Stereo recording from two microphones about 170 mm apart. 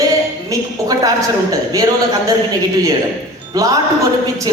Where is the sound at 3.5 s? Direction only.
20° right (ahead or behind).